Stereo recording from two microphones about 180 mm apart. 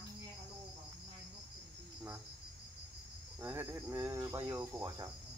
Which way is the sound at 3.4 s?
10° right (ahead or behind).